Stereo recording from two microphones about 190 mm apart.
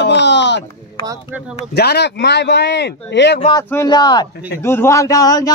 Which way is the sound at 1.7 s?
60° left (ahead or behind).